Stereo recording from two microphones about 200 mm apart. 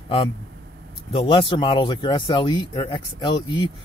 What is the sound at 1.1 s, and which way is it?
Speech, 25° left (ahead or behind).